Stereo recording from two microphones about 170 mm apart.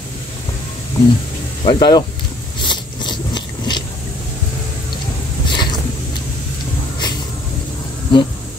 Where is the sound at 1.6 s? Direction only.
25° left (ahead or behind).